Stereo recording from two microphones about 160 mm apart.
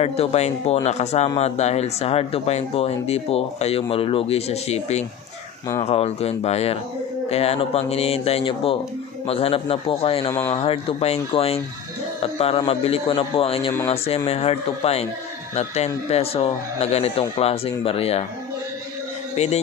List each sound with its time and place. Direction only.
0.0 s speech: 40° left (ahead or behind)
19.3 s a man's voice: 40° left (ahead or behind)